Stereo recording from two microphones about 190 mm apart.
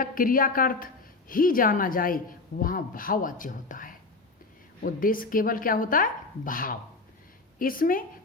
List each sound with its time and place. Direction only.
0.0 s a woman's voice: 45° left (ahead or behind)